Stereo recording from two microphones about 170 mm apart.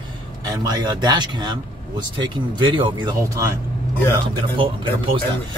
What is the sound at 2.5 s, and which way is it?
Speech, 30° right (ahead or behind).